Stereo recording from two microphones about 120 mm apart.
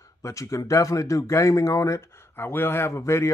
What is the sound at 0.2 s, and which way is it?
Speech, 25° left (ahead or behind).